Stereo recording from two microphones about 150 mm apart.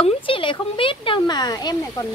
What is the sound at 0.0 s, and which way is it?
Speech, 35° left (ahead or behind).